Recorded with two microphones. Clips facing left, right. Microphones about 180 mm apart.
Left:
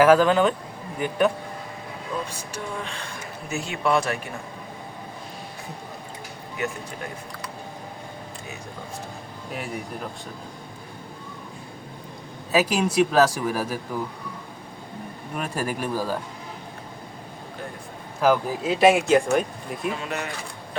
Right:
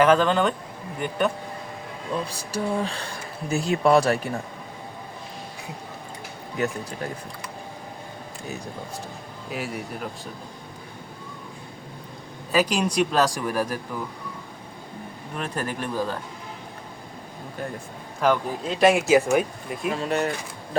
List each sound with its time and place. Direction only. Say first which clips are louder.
0.0 s speech: left 2 dB; 5° left (ahead or behind)
2.2 s speech: right 5 dB; 35° right (ahead or behind)
9.5 s speech: right 1 dB; centre (ahead or behind)
12.5 s speech: left 1 dB; 5° left (ahead or behind)
15.4 s speech: left 1 dB; 10° left (ahead or behind)
18.2 s speech: left 2 dB; 5° left (ahead or behind)
20.0 s speech: right 6 dB; 35° right (ahead or behind)